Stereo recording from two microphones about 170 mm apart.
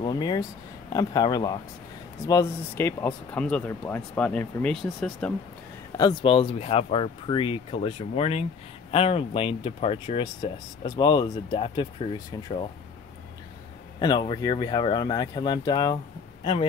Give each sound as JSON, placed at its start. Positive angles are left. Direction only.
{"t": 0.0, "sound": "speech", "side_deg": 25}
{"t": 5.9, "sound": "speech", "side_deg": 30}
{"t": 13.9, "sound": "speech", "side_deg": 25}